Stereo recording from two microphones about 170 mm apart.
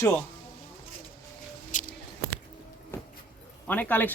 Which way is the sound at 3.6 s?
10° left (ahead or behind).